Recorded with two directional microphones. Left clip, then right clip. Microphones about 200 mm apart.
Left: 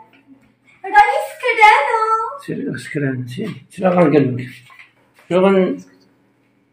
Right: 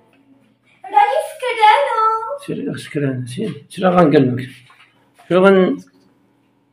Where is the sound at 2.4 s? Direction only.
5° right (ahead or behind); by 5.8 s 25° right (ahead or behind).